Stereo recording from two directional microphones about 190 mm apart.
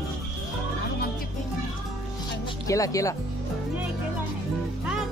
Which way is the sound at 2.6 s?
15° left (ahead or behind).